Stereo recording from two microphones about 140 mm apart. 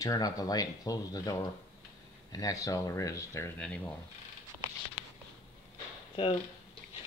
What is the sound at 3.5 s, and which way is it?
Speech, 5° left (ahead or behind).